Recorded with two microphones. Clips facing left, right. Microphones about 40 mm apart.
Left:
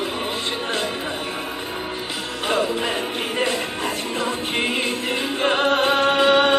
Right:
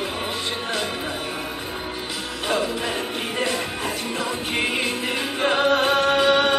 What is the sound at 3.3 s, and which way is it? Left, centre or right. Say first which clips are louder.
Music: left 2 dB; centre.